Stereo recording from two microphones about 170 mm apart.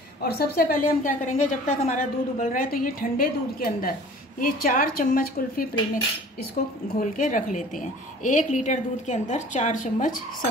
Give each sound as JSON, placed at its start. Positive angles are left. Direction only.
{"t": 0.2, "sound": "a woman's voice", "side_deg": 65}
{"t": 7.0, "sound": "a woman's voice", "side_deg": 50}